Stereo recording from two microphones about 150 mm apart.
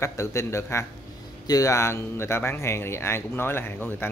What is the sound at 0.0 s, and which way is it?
Speech, 20° left (ahead or behind).